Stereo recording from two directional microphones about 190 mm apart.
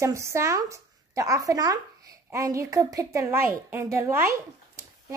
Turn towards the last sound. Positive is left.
turn(degrees=-15)  # may be behind; listen again after turning